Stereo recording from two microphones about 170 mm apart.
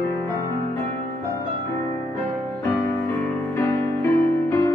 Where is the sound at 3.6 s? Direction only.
15° left (ahead or behind).